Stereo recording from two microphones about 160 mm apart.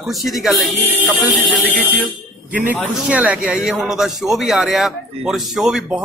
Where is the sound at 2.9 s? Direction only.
10° right (ahead or behind).